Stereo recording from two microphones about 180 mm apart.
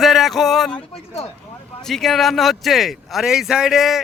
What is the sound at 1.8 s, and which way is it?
Speech, centre (ahead or behind).